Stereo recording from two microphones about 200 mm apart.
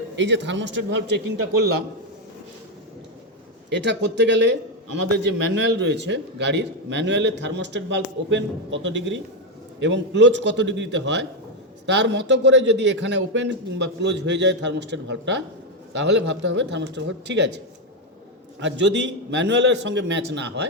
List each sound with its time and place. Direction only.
0.2 s a man's voice: 65° right (ahead or behind)
3.7 s a man's voice: 60° right (ahead or behind)
18.6 s a man's voice: 60° right (ahead or behind)